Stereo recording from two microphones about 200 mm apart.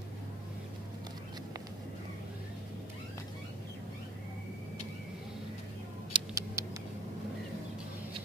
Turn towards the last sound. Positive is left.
turn(degrees=-20)  # may be behind; listen again after turning